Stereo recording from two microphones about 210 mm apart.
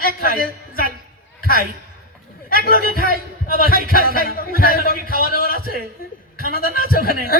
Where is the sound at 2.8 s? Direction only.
45° right (ahead or behind).